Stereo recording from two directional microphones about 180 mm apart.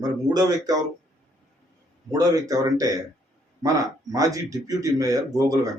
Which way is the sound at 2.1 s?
20° right (ahead or behind).